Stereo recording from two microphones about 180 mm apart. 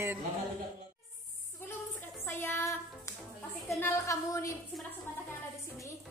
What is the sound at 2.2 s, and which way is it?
Child singing, 15° left (ahead or behind).